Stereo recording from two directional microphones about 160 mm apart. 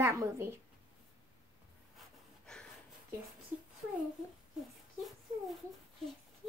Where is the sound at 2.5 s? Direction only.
5° left (ahead or behind).